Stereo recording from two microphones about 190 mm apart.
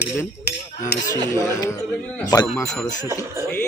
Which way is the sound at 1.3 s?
15° left (ahead or behind).